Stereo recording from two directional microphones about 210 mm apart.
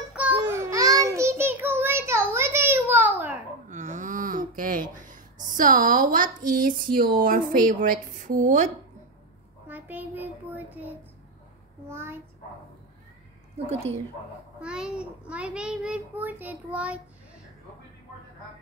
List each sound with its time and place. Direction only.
0.1 s child singing: 5° right (ahead or behind)
3.6 s a sound: 35° right (ahead or behind)
4.9 s a woman's voice: 40° right (ahead or behind)
9.7 s child singing: 10° right (ahead or behind)
11.9 s a child's voice: 10° right (ahead or behind)
14.6 s a child's voice: 5° right (ahead or behind)